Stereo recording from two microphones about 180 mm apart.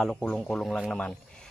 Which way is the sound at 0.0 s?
5° left (ahead or behind).